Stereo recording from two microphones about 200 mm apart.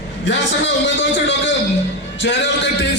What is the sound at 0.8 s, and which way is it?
A man's voice, 65° left (ahead or behind).